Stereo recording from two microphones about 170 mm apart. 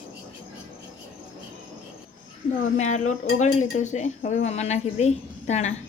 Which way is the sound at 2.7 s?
45° left (ahead or behind).